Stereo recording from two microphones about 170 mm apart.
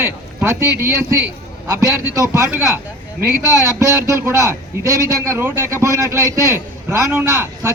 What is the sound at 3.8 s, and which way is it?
A man's voice, 15° right (ahead or behind).